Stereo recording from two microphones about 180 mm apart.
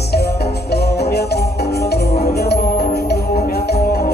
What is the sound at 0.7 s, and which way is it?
Music, 65° left (ahead or behind).